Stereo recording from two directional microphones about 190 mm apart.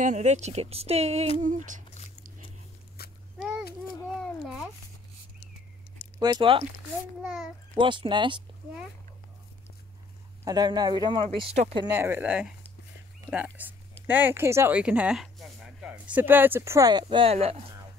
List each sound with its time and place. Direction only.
0.0 s speech: 40° right (ahead or behind)
3.0 s a sound: 55° left (ahead or behind)
3.3 s a sound: 5° right (ahead or behind)
6.1 s speech: 25° right (ahead or behind)
7.2 s a child's voice: centre (ahead or behind)
7.7 s speech: 25° right (ahead or behind)
10.4 s speech: 20° right (ahead or behind)
11.8 s speech: 10° right (ahead or behind); by 17.7 s 30° right (ahead or behind)